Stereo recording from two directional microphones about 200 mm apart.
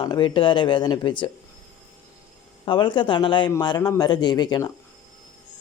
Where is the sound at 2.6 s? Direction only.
25° left (ahead or behind).